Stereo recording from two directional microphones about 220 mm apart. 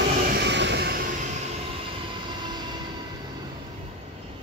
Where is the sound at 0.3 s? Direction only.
50° right (ahead or behind).